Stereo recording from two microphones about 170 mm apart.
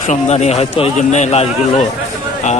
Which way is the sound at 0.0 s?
45° left (ahead or behind).